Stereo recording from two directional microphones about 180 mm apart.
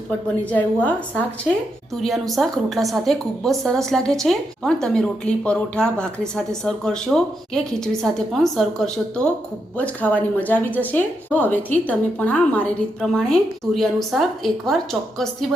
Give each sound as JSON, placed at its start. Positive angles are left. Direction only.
{"t": 0.5, "sound": "a woman's voice", "side_deg": 10}